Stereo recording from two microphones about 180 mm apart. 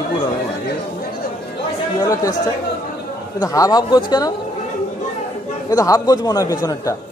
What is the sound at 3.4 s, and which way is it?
Speech, 20° left (ahead or behind).